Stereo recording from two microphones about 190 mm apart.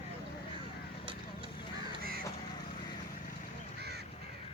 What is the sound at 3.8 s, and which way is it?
Crow, 60° right (ahead or behind).